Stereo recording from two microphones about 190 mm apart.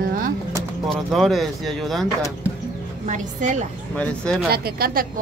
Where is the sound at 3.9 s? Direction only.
5° left (ahead or behind).